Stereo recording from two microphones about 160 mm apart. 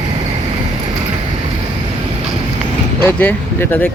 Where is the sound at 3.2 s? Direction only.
10° left (ahead or behind).